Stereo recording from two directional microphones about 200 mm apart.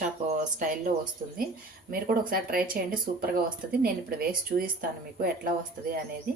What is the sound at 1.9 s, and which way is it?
Speech, 45° right (ahead or behind).